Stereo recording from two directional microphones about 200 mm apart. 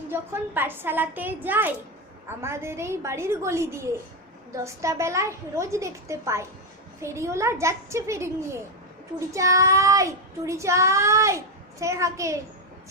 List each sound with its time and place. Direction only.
0.1 s a child's voice: 10° right (ahead or behind)